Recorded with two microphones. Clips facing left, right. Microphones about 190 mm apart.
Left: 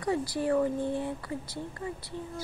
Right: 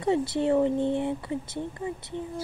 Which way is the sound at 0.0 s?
25° right (ahead or behind).